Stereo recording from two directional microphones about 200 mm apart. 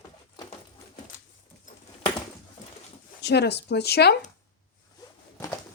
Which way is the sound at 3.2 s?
55° left (ahead or behind).